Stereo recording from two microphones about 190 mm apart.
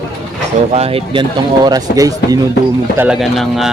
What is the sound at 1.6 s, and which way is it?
Speech, 20° right (ahead or behind).